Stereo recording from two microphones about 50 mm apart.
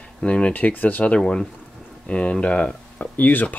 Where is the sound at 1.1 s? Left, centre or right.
Centre.